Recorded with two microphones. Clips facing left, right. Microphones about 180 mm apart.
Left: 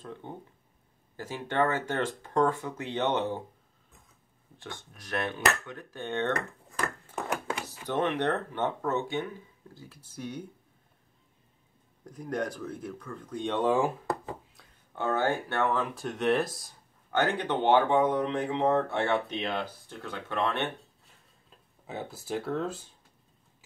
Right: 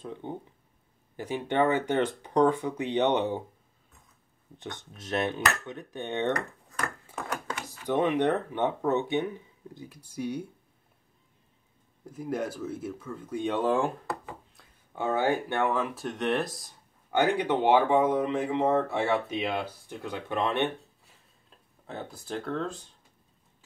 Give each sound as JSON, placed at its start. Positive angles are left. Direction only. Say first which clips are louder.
{"t": 0.0, "sound": "speech", "louder": "right 4 dB", "side_deg": -15}
{"t": 4.6, "sound": "speech", "louder": "right 3 dB", "side_deg": -20}
{"t": 7.6, "sound": "speech", "louder": "right 5 dB", "side_deg": -15}
{"t": 12.1, "sound": "speech", "louder": "right 1 dB", "side_deg": -5}
{"t": 14.6, "sound": "speech", "louder": "right 2 dB", "side_deg": -10}
{"t": 17.1, "sound": "speech", "louder": "right 3 dB", "side_deg": -10}
{"t": 21.5, "sound": "speech", "louder": "even", "side_deg": 5}